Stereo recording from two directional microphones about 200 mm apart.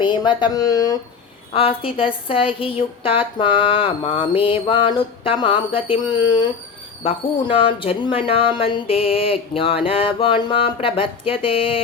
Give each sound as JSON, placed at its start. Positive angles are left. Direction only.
{"t": 0.0, "sound": "a woman's voice", "side_deg": 20}